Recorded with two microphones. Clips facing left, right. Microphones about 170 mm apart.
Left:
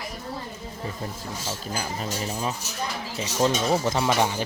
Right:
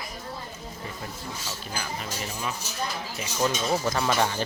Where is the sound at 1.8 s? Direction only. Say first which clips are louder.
Left 3 dB; 35° left (ahead or behind).